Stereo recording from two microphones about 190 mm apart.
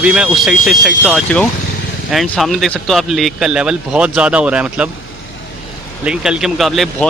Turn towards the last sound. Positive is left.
turn(degrees=0)  # may be behind; listen again after turning